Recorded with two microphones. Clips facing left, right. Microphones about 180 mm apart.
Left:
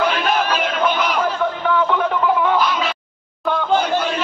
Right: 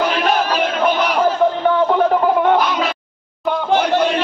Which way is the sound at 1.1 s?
35° right (ahead or behind).